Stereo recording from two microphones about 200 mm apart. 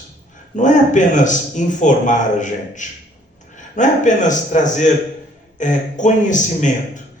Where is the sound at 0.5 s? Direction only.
40° left (ahead or behind).